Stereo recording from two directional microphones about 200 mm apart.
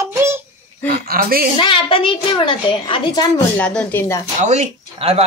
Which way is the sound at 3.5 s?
5° left (ahead or behind).